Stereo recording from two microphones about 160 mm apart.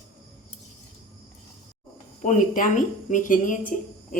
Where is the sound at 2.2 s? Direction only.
50° left (ahead or behind).